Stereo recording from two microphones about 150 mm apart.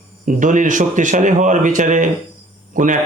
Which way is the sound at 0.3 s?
60° right (ahead or behind).